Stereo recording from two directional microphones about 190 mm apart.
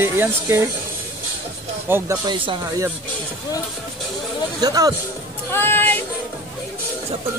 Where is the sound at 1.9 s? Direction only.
10° right (ahead or behind).